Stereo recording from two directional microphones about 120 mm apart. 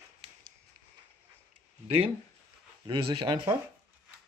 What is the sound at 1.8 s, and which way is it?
Speech, 50° right (ahead or behind).